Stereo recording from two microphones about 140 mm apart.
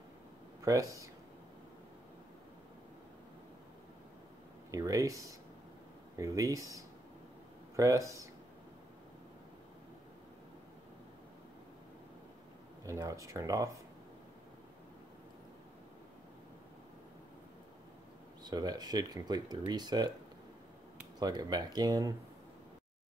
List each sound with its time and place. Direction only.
0.6 s speech: 25° right (ahead or behind)
4.6 s speech: 25° right (ahead or behind)
12.8 s speech: 20° right (ahead or behind)
18.4 s speech: 30° right (ahead or behind)
21.2 s speech: 30° right (ahead or behind)